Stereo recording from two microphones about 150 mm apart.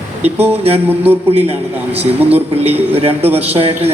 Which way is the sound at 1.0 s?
45° right (ahead or behind).